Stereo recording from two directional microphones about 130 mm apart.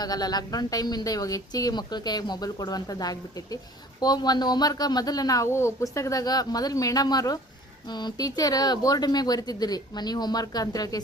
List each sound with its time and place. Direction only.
0.0 s speech: 30° left (ahead or behind)